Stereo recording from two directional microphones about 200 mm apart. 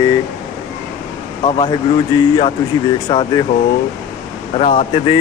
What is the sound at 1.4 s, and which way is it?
Speech, 25° left (ahead or behind).